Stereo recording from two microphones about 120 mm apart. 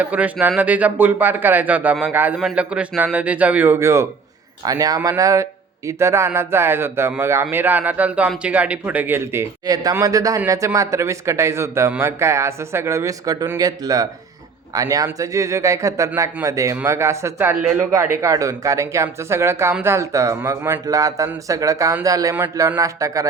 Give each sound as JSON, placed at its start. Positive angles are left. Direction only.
{"t": 0.0, "sound": "speech", "side_deg": -10}
{"t": 9.6, "sound": "speech", "side_deg": -30}